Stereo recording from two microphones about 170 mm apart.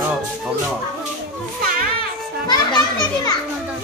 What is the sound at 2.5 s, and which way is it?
Children playing, 25° left (ahead or behind).